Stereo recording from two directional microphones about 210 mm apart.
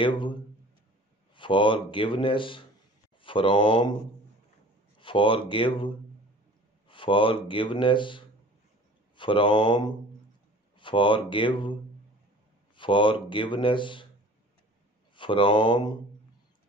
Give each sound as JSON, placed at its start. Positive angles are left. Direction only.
{"t": 0.0, "sound": "a man's voice", "side_deg": 25}
{"t": 4.9, "sound": "speech", "side_deg": 25}
{"t": 6.9, "sound": "speech", "side_deg": 25}
{"t": 12.7, "sound": "speech", "side_deg": 25}
{"t": 15.1, "sound": "speech", "side_deg": 25}